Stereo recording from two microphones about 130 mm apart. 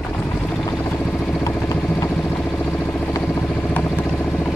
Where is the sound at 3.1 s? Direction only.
15° left (ahead or behind).